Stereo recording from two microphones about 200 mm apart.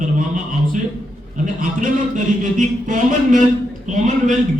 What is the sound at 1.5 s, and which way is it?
Speech, 40° right (ahead or behind).